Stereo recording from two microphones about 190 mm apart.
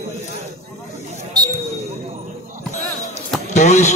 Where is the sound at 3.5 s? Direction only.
35° left (ahead or behind).